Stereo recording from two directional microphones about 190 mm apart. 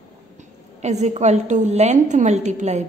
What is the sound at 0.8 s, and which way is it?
A woman's voice, 35° right (ahead or behind).